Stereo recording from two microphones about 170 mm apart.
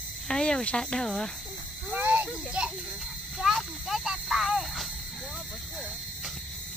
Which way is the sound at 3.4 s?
Centre (ahead or behind).